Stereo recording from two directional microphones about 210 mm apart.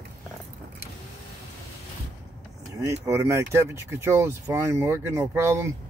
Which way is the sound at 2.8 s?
15° right (ahead or behind).